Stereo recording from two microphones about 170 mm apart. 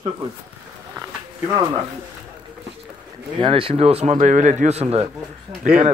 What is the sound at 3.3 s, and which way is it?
Speech, 30° right (ahead or behind).